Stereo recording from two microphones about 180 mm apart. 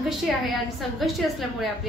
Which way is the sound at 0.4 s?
Centre (ahead or behind).